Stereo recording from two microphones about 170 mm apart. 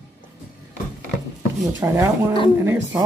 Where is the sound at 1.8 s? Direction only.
15° right (ahead or behind).